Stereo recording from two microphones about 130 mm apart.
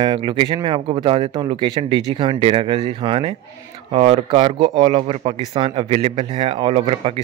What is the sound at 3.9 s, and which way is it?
A child's voice, 50° right (ahead or behind).